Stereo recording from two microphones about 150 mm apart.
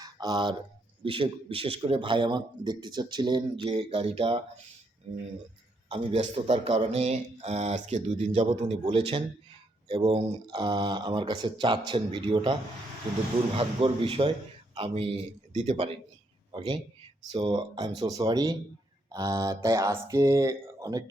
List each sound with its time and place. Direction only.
0.0 s a sound: 25° right (ahead or behind)
1.0 s a man's voice: 35° right (ahead or behind)
5.9 s a man's voice: 40° right (ahead or behind)
13.6 s a man's voice: 35° right (ahead or behind)